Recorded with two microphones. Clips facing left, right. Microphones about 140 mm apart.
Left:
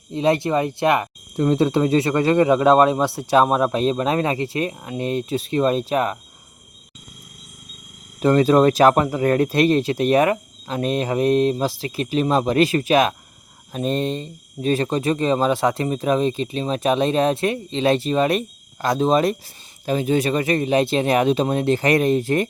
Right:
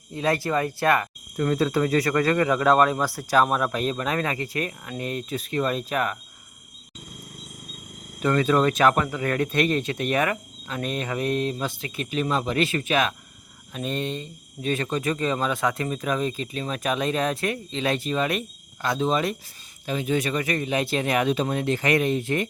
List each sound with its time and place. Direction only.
0.1 s speech: 25° left (ahead or behind)
8.2 s speech: 30° left (ahead or behind)